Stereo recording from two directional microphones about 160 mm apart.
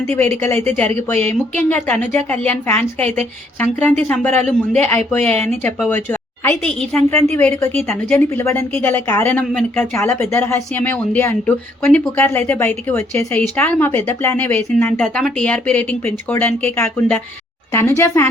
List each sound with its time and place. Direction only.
0.0 s a woman's voice: 10° left (ahead or behind)
1.1 s speech: 45° right (ahead or behind)
1.5 s a woman's voice: 10° left (ahead or behind)
7.1 s a woman's voice: 15° left (ahead or behind)
9.4 s speech: 5° left (ahead or behind)
9.9 s a woman's voice: 15° left (ahead or behind)